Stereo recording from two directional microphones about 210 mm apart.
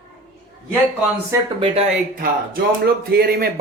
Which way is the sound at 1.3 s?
20° right (ahead or behind).